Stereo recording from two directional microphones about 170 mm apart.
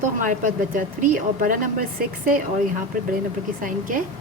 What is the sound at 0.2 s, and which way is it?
A woman's voice, 50° right (ahead or behind).